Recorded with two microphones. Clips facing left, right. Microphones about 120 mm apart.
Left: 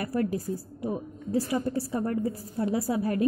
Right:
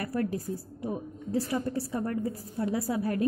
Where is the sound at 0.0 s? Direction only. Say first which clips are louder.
Left 2 dB; 25° left (ahead or behind).